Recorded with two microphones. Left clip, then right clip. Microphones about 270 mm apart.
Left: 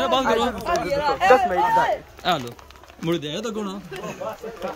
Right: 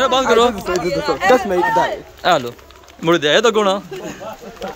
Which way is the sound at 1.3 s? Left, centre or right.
Right.